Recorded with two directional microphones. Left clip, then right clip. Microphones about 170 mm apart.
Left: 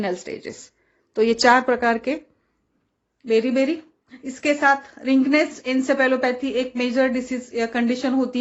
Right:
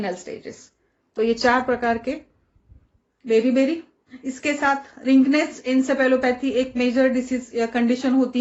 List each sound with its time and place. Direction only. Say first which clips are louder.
0.0 s a woman's voice: left 2 dB; 40° left (ahead or behind)
3.2 s a woman's voice: right 1 dB; 35° left (ahead or behind)